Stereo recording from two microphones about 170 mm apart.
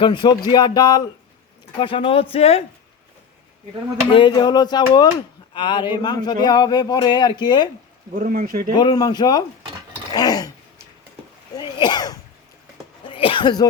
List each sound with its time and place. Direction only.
0.0 s speech: 25° left (ahead or behind)
4.1 s speech: 25° left (ahead or behind)
8.1 s speech: 55° right (ahead or behind)
8.8 s speech: 25° left (ahead or behind)
10.1 s a sound: 25° left (ahead or behind)
11.5 s sneeze: 25° left (ahead or behind)
13.1 s speech: 30° left (ahead or behind)